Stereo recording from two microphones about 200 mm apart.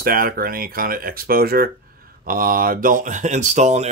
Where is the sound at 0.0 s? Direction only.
45° right (ahead or behind).